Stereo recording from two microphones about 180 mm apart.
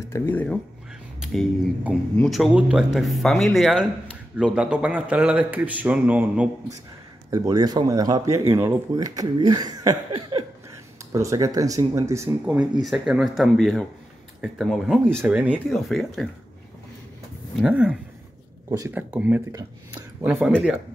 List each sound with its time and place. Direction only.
0.1 s speech: 10° left (ahead or behind); by 6.5 s 10° right (ahead or behind)
7.2 s speech: 20° right (ahead or behind); by 16.3 s centre (ahead or behind)
17.6 s speech: 5° right (ahead or behind)
18.7 s speech: 15° right (ahead or behind)